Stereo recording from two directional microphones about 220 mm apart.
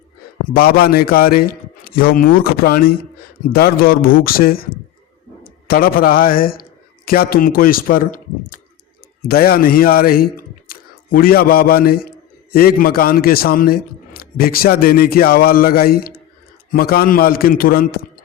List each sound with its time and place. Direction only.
0.4 s a man's voice: 40° left (ahead or behind)